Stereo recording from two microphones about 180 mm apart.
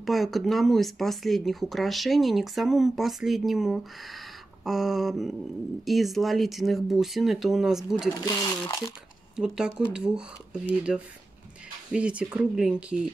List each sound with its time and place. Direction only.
0.0 s speech: centre (ahead or behind)
8.3 s speech: 20° left (ahead or behind)
9.4 s speech: 5° right (ahead or behind)